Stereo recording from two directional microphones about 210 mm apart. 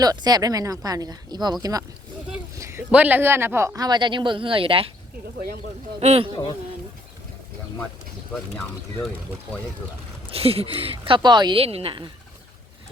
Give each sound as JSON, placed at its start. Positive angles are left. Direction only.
{"t": 0.0, "sound": "speech", "side_deg": -20}
{"t": 2.6, "sound": "speech", "side_deg": -15}
{"t": 6.0, "sound": "a woman's voice", "side_deg": -30}
{"t": 10.3, "sound": "a woman's voice", "side_deg": -30}